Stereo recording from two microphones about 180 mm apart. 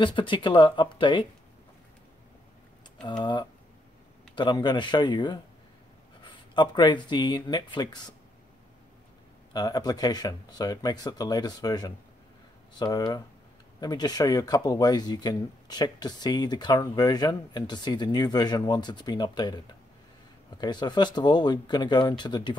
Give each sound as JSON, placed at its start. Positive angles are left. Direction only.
{"t": 0.0, "sound": "speech", "side_deg": 25}
{"t": 3.0, "sound": "speech", "side_deg": 25}
{"t": 9.5, "sound": "speech", "side_deg": 20}